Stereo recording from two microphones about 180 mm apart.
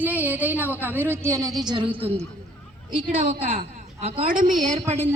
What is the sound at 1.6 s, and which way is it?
Speech, 25° right (ahead or behind).